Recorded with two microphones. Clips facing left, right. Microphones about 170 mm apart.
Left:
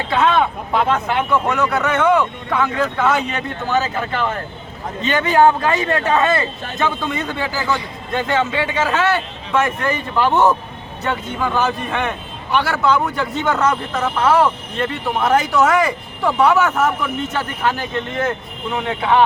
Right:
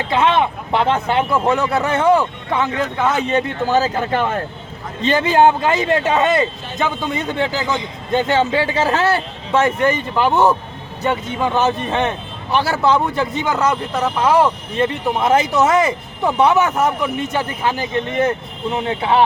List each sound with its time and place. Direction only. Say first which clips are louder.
0.1 s speech: even; 20° right (ahead or behind); by 4.4 s 45° right (ahead or behind)
5.0 s speech: right 1 dB; 30° right (ahead or behind)
13.3 s speech: even; 10° right (ahead or behind)